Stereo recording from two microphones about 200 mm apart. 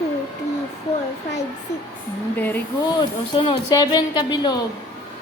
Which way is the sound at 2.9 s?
25° left (ahead or behind).